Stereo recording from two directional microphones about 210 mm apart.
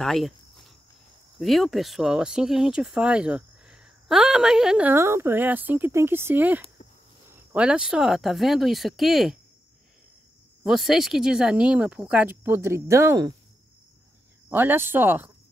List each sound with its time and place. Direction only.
0.0 s cricket: centre (ahead or behind)
1.4 s speech: centre (ahead or behind)
10.6 s speech: centre (ahead or behind)
14.5 s speech: 10° right (ahead or behind)